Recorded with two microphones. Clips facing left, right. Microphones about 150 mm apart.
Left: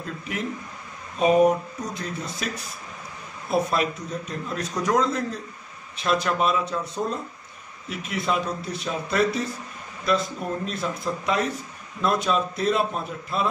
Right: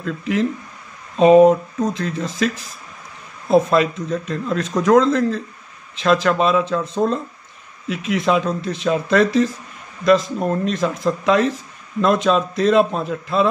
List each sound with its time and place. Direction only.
0.0 s speech: 90° right